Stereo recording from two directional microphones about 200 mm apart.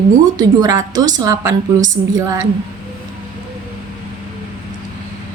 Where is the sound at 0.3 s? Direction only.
15° right (ahead or behind).